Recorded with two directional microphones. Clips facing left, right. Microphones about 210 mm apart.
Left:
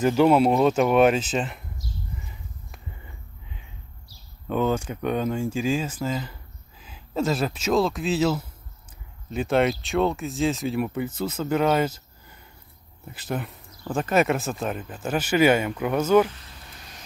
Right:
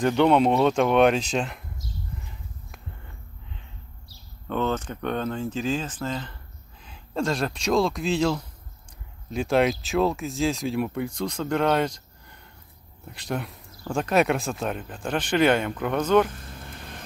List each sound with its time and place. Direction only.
0.0 s speech: 5° left (ahead or behind)
4.5 s speech: 10° left (ahead or behind)
16.3 s vehicle: 50° right (ahead or behind)